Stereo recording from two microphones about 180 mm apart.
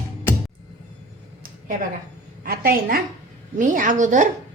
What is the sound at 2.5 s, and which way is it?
A woman's voice, 55° right (ahead or behind).